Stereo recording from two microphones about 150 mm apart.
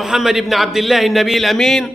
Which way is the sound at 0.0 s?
Centre (ahead or behind).